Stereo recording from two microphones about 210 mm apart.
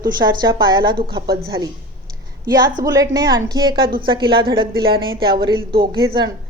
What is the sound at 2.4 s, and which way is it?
A woman's voice, 20° right (ahead or behind).